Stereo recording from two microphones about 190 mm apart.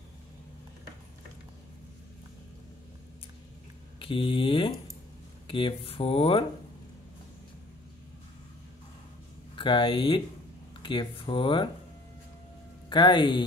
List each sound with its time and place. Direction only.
4.0 s speech: 25° left (ahead or behind)
9.6 s speech: 25° left (ahead or behind)
12.9 s speech: 25° left (ahead or behind)